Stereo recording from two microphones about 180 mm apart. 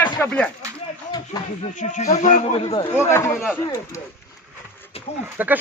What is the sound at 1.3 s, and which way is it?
Speech, 20° left (ahead or behind).